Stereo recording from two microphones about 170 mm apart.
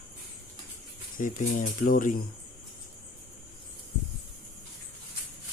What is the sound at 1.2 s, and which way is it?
Speech, 50° left (ahead or behind).